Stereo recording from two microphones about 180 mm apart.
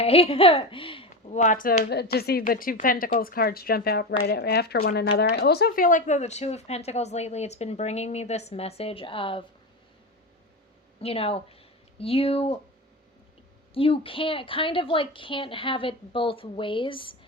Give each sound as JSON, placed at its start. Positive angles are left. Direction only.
{"t": 0.0, "sound": "speech", "side_deg": 35}
{"t": 1.1, "sound": "speech", "side_deg": 40}
{"t": 11.0, "sound": "speech", "side_deg": 30}
{"t": 13.7, "sound": "a woman's voice", "side_deg": 30}